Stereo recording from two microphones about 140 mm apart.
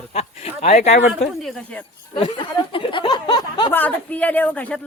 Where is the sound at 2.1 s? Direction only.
35° left (ahead or behind).